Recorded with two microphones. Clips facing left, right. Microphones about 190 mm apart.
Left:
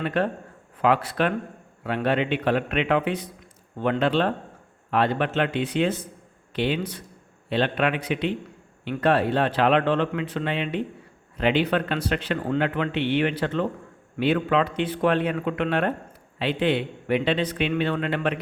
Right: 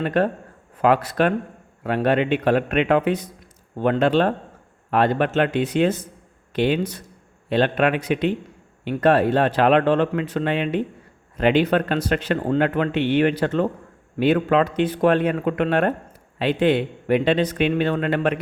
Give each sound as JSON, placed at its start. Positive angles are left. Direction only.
{"t": 0.0, "sound": "speech", "side_deg": -45}